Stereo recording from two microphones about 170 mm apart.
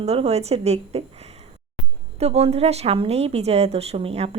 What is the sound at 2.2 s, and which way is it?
A woman's voice, 40° right (ahead or behind).